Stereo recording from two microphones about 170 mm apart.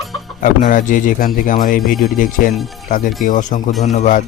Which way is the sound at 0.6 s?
50° left (ahead or behind).